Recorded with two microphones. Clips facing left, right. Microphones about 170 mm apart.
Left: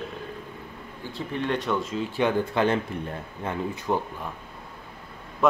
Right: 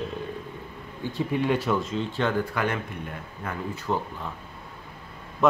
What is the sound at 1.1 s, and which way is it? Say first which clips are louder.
Speech: right 3 dB; 10° right (ahead or behind).